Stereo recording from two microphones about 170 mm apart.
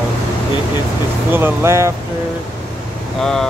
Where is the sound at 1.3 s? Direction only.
15° right (ahead or behind).